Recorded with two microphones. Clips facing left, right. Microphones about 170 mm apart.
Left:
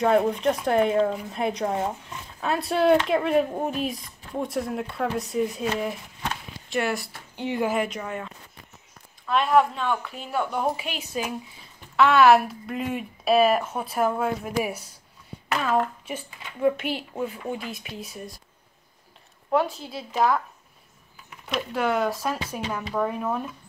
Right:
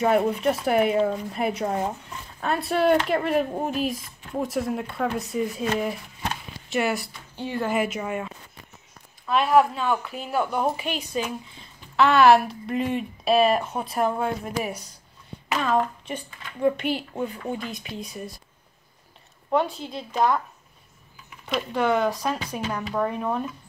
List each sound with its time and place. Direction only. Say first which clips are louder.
0.0 s a woman's voice: even; 5° right (ahead or behind)
7.3 s speech: left 2 dB; 15° left (ahead or behind)
7.7 s a woman's voice: right 2 dB; 5° right (ahead or behind)
19.5 s a woman's voice: even; centre (ahead or behind)
21.5 s a woman's voice: right 2 dB; centre (ahead or behind)